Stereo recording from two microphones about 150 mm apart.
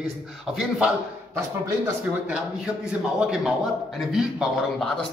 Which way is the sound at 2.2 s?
5° right (ahead or behind).